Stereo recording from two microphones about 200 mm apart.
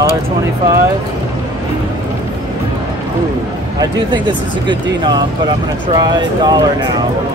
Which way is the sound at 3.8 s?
20° right (ahead or behind).